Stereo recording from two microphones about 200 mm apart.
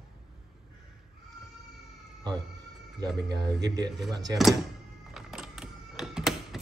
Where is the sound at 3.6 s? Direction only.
20° right (ahead or behind).